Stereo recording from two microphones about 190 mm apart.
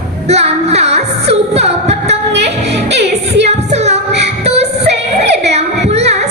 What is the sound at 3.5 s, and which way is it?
Music, 35° right (ahead or behind).